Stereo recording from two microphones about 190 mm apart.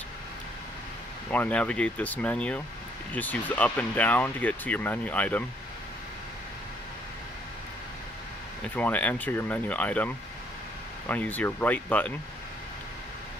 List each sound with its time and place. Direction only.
1.3 s speech: 5° left (ahead or behind)
8.6 s speech: 10° left (ahead or behind)